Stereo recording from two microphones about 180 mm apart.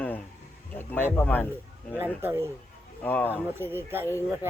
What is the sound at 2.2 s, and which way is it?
Speech, 15° right (ahead or behind).